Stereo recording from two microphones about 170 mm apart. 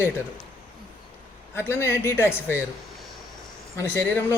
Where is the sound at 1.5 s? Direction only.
15° left (ahead or behind).